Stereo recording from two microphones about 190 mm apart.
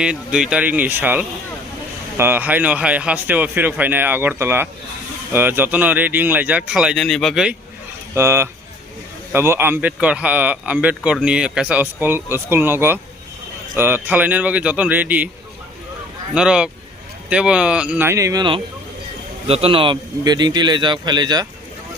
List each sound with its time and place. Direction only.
0.0 s a man's voice: 5° right (ahead or behind)
8.1 s a man's voice: 15° right (ahead or behind)
16.3 s a man's voice: 5° right (ahead or behind); by 21.4 s 20° right (ahead or behind)